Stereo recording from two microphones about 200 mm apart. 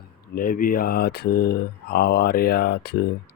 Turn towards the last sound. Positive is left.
turn(degrees=50)  # may be behind; listen again after turning